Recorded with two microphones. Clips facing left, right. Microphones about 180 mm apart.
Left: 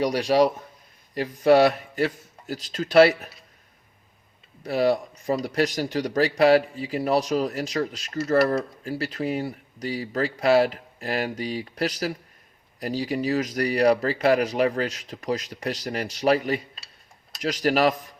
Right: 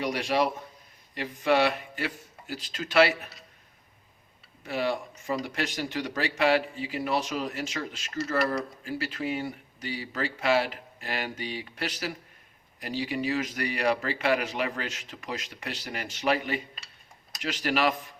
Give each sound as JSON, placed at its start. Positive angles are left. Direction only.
{"t": 0.0, "sound": "speech", "side_deg": 40}
{"t": 4.6, "sound": "speech", "side_deg": 40}